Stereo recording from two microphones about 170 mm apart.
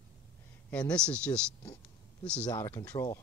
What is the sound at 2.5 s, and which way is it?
Speech, 20° left (ahead or behind).